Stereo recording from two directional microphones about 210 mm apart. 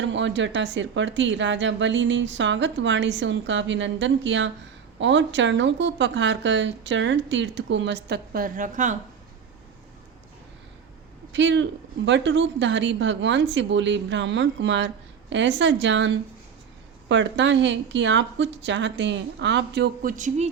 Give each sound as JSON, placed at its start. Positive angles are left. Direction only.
{"t": 0.0, "sound": "speech", "side_deg": -60}
{"t": 11.3, "sound": "speech", "side_deg": -60}